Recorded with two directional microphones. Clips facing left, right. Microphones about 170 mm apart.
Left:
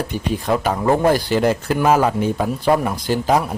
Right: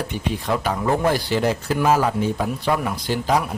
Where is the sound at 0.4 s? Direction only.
45° left (ahead or behind).